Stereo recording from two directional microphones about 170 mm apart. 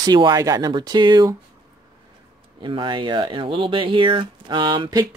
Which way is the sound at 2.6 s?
30° right (ahead or behind).